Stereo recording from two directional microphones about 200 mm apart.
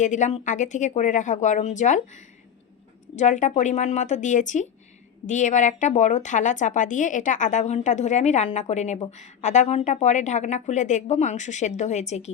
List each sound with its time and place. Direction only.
0.0 s speech: 40° left (ahead or behind)